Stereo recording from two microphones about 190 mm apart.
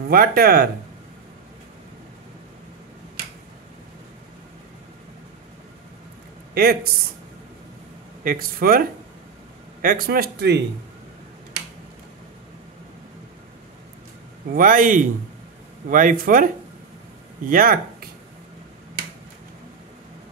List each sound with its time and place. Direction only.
0.1 s speech: 50° right (ahead or behind)
6.5 s speech: 55° right (ahead or behind)
8.2 s speech: 50° right (ahead or behind)
14.5 s speech: 45° right (ahead or behind)
17.5 s speech: 50° right (ahead or behind)